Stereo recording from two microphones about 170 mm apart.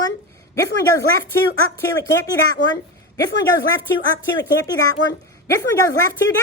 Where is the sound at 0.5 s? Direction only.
20° left (ahead or behind).